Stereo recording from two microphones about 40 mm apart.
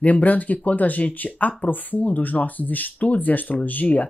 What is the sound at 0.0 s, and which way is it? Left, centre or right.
Speech, left.